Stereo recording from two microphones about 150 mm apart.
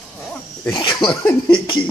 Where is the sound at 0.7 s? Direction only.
30° left (ahead or behind).